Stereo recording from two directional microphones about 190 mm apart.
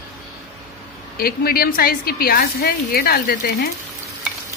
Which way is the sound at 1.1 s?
50° left (ahead or behind).